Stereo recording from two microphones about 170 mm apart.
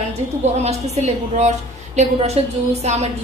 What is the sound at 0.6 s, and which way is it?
A woman's voice, 40° right (ahead or behind).